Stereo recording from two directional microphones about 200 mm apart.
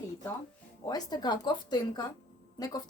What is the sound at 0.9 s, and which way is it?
Speech, 20° left (ahead or behind).